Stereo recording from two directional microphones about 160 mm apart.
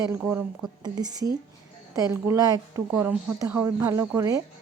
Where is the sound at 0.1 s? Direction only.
15° right (ahead or behind).